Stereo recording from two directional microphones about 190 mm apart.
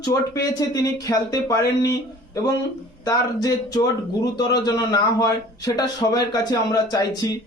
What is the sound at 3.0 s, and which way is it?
Speech, 20° left (ahead or behind).